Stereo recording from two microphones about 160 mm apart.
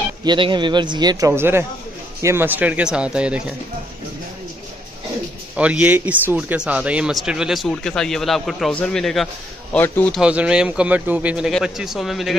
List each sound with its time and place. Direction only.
0.2 s a man's voice: 30° right (ahead or behind); by 3.5 s 5° right (ahead or behind)
5.6 s speech: 10° right (ahead or behind); by 10.2 s 10° left (ahead or behind)
10.2 s speech: 5° right (ahead or behind)